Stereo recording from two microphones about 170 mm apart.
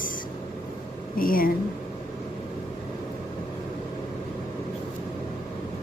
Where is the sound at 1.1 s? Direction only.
55° left (ahead or behind).